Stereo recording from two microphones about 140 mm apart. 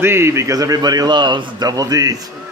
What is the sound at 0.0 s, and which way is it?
A man's voice, 15° right (ahead or behind).